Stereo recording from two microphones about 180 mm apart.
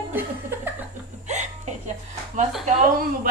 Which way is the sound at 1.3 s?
40° right (ahead or behind).